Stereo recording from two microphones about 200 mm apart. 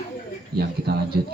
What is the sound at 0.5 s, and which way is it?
Speech, 50° right (ahead or behind).